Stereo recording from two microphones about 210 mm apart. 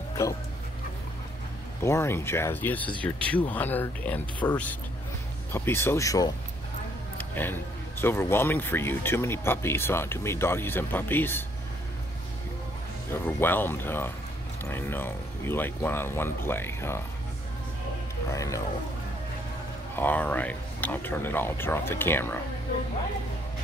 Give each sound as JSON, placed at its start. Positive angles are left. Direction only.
{"t": 1.8, "sound": "speech", "side_deg": 10}
{"t": 5.5, "sound": "speech", "side_deg": 10}
{"t": 13.1, "sound": "speech", "side_deg": 10}
{"t": 18.3, "sound": "speech", "side_deg": 15}
{"t": 20.0, "sound": "speech", "side_deg": 10}